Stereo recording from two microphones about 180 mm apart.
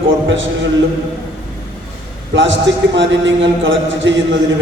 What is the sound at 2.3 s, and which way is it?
A man's voice, 90° right.